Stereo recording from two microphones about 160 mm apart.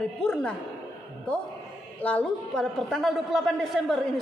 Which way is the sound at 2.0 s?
10° left (ahead or behind).